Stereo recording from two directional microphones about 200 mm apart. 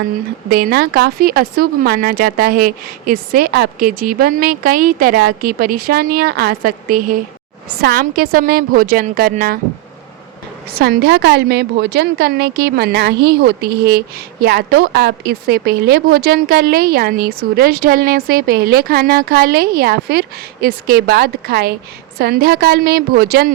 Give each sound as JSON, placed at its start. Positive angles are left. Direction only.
{"t": 0.5, "sound": "a woman's voice", "side_deg": -50}
{"t": 10.8, "sound": "a woman's voice", "side_deg": -55}